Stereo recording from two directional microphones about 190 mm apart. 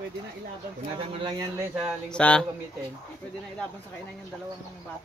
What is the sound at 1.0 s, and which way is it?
Speech, 20° right (ahead or behind).